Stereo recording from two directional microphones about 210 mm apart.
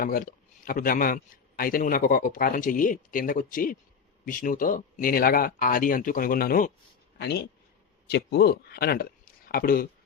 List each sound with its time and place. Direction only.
0.0 s speech: 40° left (ahead or behind)
8.0 s speech: 50° left (ahead or behind)